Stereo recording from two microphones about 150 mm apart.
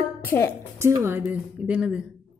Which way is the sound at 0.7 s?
15° right (ahead or behind).